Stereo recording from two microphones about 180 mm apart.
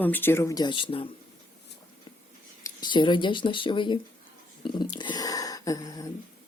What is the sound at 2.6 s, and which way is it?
Speech, 20° left (ahead or behind).